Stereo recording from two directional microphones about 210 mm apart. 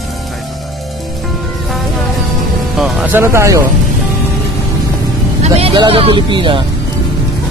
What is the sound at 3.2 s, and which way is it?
Speech, 15° right (ahead or behind).